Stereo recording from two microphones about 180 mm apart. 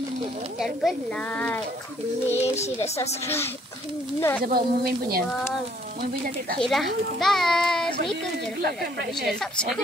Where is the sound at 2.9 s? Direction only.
15° left (ahead or behind).